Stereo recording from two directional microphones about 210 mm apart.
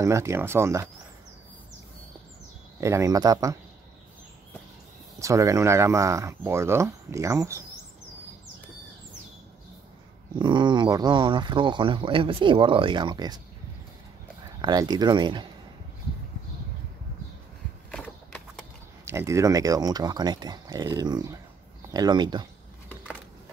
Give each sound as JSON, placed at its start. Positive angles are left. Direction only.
{"t": 0.0, "sound": "speech", "side_deg": -15}
{"t": 2.8, "sound": "speech", "side_deg": -15}
{"t": 5.2, "sound": "speech", "side_deg": -15}
{"t": 10.3, "sound": "speech", "side_deg": -20}
{"t": 14.6, "sound": "speech", "side_deg": -20}
{"t": 19.0, "sound": "speech", "side_deg": -15}